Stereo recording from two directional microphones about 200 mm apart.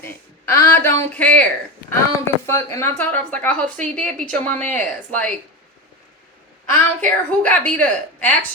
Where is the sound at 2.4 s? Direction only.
15° left (ahead or behind).